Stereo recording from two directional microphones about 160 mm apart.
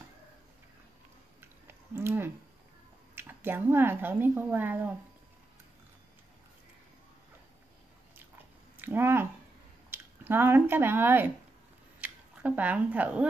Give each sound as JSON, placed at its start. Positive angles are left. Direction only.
{"t": 1.4, "sound": "a sound", "side_deg": -15}
{"t": 3.2, "sound": "speech", "side_deg": -10}
{"t": 8.7, "sound": "speech", "side_deg": -15}